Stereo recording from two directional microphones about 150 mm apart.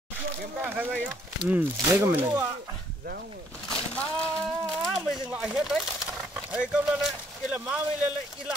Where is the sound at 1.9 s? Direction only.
15° right (ahead or behind).